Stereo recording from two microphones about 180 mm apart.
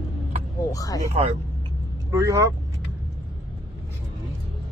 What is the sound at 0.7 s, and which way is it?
Speech, 20° left (ahead or behind).